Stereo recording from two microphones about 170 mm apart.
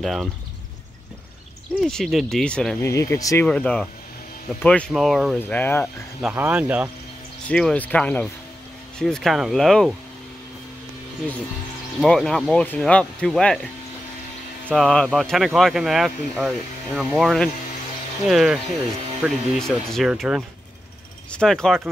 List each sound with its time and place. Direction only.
0.0 s speech: centre (ahead or behind)
1.8 s speech: centre (ahead or behind)
2.8 s speech: 15° left (ahead or behind)
3.4 s speech: 5° left (ahead or behind)
5.4 s speech: 10° left (ahead or behind)
6.2 s speech: 10° right (ahead or behind)
7.4 s speech: 5° left (ahead or behind)
12.0 s speech: centre (ahead or behind)
14.7 s speech: 5° left (ahead or behind)